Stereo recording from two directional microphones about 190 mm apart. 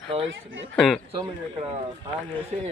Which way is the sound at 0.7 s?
Centre (ahead or behind).